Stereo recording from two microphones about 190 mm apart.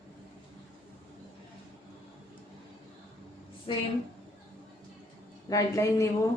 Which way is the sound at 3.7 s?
25° left (ahead or behind).